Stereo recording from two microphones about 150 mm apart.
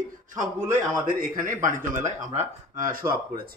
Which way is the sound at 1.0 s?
65° right (ahead or behind).